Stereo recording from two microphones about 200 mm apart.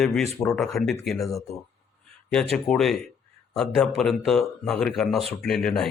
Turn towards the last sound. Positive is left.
turn(degrees=5)  # may be behind; listen again after turning